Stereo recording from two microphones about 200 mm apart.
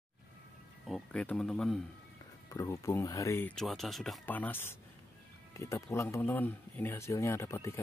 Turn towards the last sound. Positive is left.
turn(degrees=15)  # may be behind; listen again after turning